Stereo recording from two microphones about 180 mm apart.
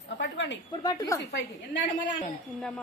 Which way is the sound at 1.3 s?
80° left.